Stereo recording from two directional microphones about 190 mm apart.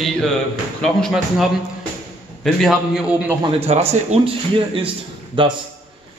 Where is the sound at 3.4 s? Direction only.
30° right (ahead or behind).